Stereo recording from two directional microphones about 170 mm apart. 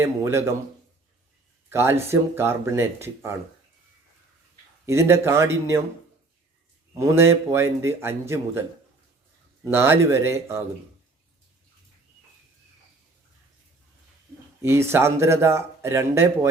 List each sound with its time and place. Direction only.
0.0 s speech: 15° right (ahead or behind)
1.7 s speech: 15° right (ahead or behind)
4.9 s speech: 15° right (ahead or behind)
6.9 s speech: 15° right (ahead or behind)
9.6 s speech: 15° right (ahead or behind)
14.6 s speech: 15° right (ahead or behind)